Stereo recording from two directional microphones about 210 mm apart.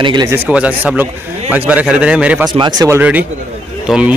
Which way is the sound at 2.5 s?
20° right (ahead or behind).